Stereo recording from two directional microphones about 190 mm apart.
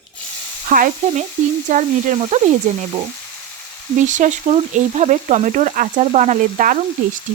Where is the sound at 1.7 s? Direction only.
40° right (ahead or behind).